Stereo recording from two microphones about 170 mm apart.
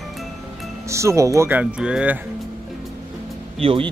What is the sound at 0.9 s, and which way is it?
Speech, 15° right (ahead or behind).